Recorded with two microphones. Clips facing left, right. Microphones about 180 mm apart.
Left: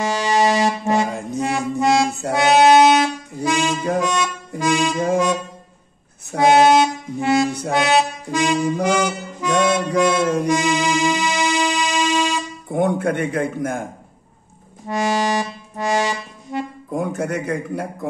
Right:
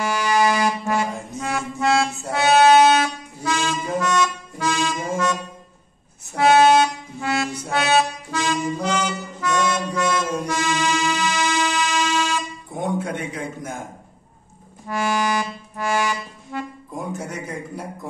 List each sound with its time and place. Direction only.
0.0 s music: 25° left (ahead or behind)
4.0 s harmonica: 15° left (ahead or behind)
6.4 s music: 15° left (ahead or behind)
9.6 s mantra: 55° left (ahead or behind)
10.4 s music: 15° left (ahead or behind)
12.7 s a man's voice: 60° left (ahead or behind)
14.9 s music: 25° left (ahead or behind)
16.9 s a man's voice: 60° left (ahead or behind)